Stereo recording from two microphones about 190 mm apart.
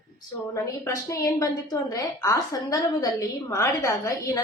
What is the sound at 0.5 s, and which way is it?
A woman's voice, 15° left (ahead or behind).